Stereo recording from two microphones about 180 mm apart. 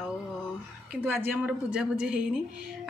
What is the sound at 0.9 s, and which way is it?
A woman's voice, 10° right (ahead or behind).